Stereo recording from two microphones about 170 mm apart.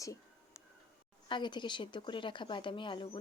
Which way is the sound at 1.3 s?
25° left (ahead or behind).